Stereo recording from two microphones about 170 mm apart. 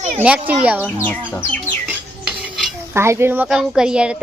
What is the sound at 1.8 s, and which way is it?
Cutlery, 5° right (ahead or behind).